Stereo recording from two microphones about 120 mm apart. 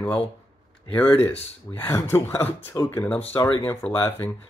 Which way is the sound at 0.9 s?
15° left (ahead or behind).